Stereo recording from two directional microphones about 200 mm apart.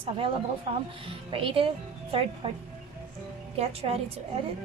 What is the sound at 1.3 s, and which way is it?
A woman's voice, 25° right (ahead or behind).